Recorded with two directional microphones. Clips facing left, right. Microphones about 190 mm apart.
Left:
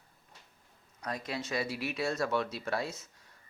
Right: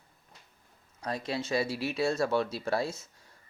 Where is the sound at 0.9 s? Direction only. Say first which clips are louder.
Right 4 dB; 30° right (ahead or behind).